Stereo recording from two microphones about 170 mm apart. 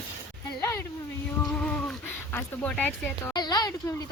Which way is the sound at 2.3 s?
10° left (ahead or behind).